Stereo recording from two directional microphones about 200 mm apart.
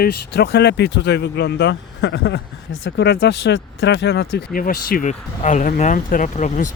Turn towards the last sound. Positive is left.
turn(degrees=40)  # may be behind; listen again after turning